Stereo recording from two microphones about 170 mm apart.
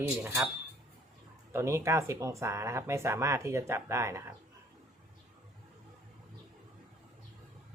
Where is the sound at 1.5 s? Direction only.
15° right (ahead or behind).